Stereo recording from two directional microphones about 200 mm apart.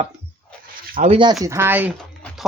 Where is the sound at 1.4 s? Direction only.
15° right (ahead or behind).